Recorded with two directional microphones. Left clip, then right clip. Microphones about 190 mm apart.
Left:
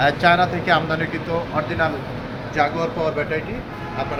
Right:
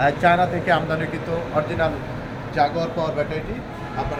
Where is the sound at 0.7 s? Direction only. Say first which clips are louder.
Left 1 dB; 25° right (ahead or behind).